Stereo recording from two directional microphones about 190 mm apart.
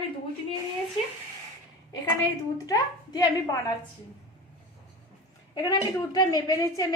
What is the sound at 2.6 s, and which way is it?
Speech, 20° left (ahead or behind).